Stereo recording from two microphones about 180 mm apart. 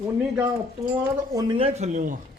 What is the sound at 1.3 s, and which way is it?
Speech, 30° right (ahead or behind).